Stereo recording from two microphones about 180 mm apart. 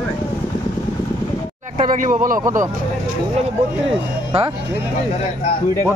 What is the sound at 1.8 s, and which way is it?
Speech, 45° right (ahead or behind).